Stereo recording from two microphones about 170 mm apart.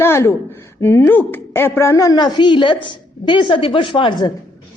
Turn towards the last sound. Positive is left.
turn(degrees=25)  # may be behind; listen again after turning